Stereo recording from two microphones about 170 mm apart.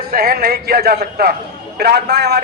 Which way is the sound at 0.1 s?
65° right (ahead or behind).